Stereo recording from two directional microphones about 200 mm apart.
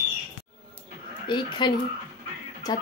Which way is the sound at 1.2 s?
25° left (ahead or behind).